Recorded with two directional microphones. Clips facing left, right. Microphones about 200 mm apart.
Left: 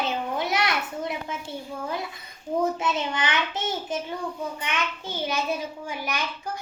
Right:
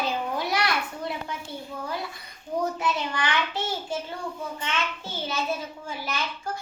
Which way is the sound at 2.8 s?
20° left (ahead or behind).